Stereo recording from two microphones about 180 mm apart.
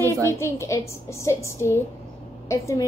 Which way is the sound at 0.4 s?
15° left (ahead or behind).